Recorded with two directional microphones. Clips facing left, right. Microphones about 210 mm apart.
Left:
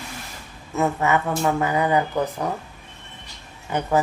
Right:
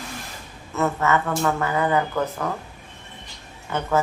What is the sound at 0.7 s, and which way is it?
Speech, 15° left (ahead or behind).